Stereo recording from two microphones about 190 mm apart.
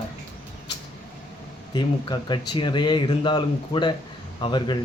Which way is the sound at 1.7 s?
25° left (ahead or behind).